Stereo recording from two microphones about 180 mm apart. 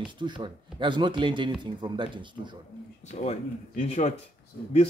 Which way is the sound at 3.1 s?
40° left (ahead or behind).